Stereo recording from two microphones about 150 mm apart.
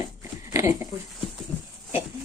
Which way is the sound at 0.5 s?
20° right (ahead or behind).